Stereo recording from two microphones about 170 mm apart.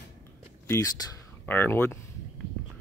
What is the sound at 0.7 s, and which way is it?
Speech, 15° left (ahead or behind).